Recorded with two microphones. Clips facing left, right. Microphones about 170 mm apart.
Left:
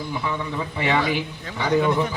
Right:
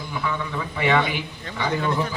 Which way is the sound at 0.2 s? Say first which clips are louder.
Right 2 dB; 25° left (ahead or behind).